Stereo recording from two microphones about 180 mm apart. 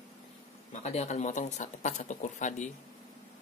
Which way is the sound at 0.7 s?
40° left (ahead or behind).